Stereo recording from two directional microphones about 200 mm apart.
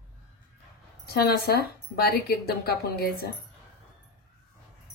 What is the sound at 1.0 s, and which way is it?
Speech, 50° left (ahead or behind).